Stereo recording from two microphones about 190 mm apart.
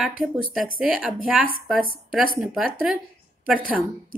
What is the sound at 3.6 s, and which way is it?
Speech, 50° right (ahead or behind).